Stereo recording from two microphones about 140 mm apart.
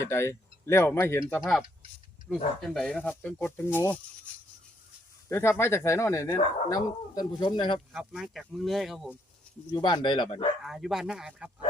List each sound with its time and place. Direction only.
0.0 s speech: 20° left (ahead or behind)
2.3 s speech: centre (ahead or behind)
3.0 s speech: 10° left (ahead or behind)
5.3 s speech: 20° left (ahead or behind); by 7.8 s 35° left (ahead or behind)
7.9 s speech: 5° right (ahead or behind)
9.7 s speech: 30° left (ahead or behind)
10.6 s speech: centre (ahead or behind)